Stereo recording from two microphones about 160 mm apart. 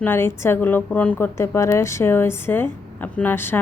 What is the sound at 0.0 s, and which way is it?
A woman's voice, 15° left (ahead or behind).